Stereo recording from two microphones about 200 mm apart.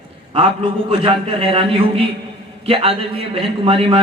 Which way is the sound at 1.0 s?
25° right (ahead or behind).